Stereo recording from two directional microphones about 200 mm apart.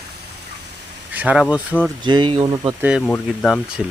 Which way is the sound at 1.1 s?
5° right (ahead or behind).